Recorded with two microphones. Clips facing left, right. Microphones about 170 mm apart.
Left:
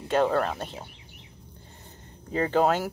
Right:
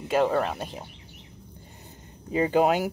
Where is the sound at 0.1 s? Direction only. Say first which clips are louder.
Even; 10° right (ahead or behind).